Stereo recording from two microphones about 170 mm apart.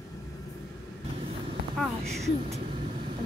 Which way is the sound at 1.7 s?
Centre (ahead or behind).